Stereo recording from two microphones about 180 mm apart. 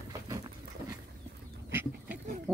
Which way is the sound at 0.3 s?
20° right (ahead or behind).